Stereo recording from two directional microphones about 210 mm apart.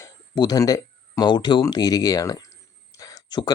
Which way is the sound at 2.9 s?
15° left (ahead or behind).